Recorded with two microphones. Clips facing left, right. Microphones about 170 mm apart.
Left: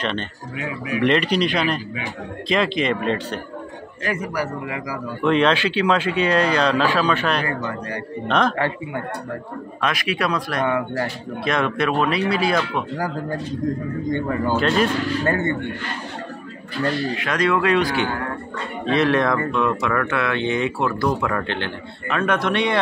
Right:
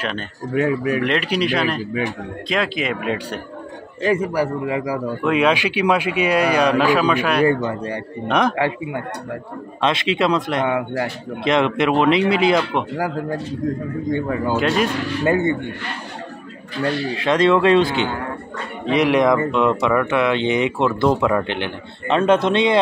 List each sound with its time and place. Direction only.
0.6 s speech: 45° right (ahead or behind)
1.0 s speech: 5° right (ahead or behind)
4.0 s speech: 30° right (ahead or behind)
5.2 s speech: 10° right (ahead or behind)
7.4 s speech: 30° right (ahead or behind)
8.3 s speech: 15° right (ahead or behind)
9.8 s speech: 25° right (ahead or behind)
12.9 s speech: 5° right (ahead or behind)
17.2 s speech: 25° right (ahead or behind)